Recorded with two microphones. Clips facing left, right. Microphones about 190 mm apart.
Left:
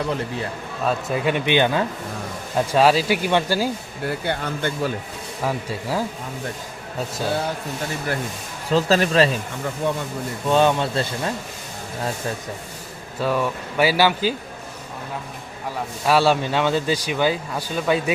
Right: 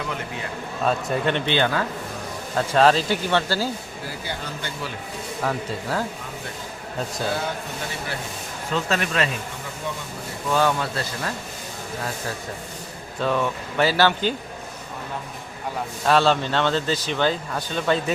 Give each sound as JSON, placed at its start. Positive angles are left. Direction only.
{"t": 0.9, "sound": "speech", "side_deg": 5}
{"t": 4.0, "sound": "speech", "side_deg": 60}
{"t": 5.4, "sound": "speech", "side_deg": 10}
{"t": 8.7, "sound": "speech", "side_deg": 35}
{"t": 9.8, "sound": "speech", "side_deg": 55}
{"t": 10.5, "sound": "speech", "side_deg": 25}
{"t": 13.1, "sound": "speech", "side_deg": 5}
{"t": 16.0, "sound": "speech", "side_deg": 10}